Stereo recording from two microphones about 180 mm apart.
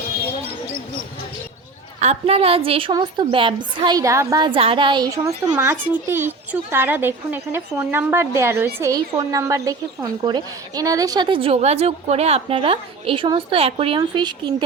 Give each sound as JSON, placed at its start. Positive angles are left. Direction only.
{"t": 2.0, "sound": "a woman's voice", "side_deg": -35}